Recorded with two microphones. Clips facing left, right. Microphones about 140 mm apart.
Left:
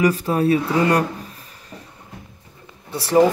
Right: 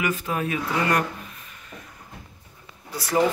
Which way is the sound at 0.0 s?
35° left (ahead or behind).